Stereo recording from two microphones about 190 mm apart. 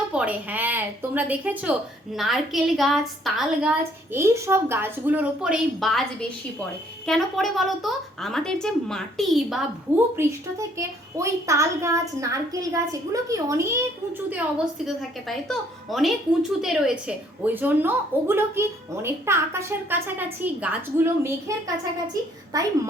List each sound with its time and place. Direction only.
0.1 s a child's voice: 5° right (ahead or behind)
10.2 s a child's voice: 15° right (ahead or behind)
14.3 s a woman's voice: 5° right (ahead or behind)